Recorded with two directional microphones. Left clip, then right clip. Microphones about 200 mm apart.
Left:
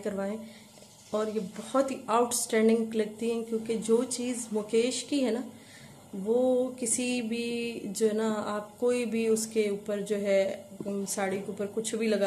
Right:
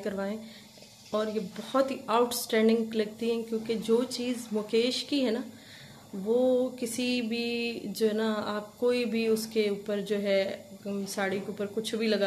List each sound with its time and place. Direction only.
0.0 s a woman's voice: 5° right (ahead or behind)